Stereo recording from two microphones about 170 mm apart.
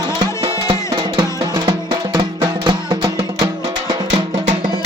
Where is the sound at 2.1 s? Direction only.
25° right (ahead or behind).